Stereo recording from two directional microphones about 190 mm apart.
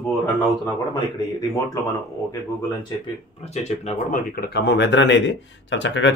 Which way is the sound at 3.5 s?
35° left (ahead or behind).